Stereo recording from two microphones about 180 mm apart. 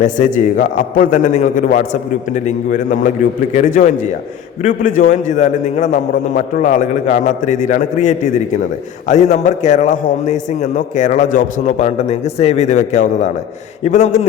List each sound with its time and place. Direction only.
0.0 s a man's voice: 45° left (ahead or behind)